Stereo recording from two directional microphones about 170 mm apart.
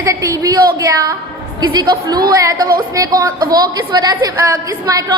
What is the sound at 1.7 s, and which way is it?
A woman's voice, 25° right (ahead or behind).